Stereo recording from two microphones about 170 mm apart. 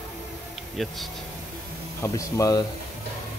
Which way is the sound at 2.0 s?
20° left (ahead or behind).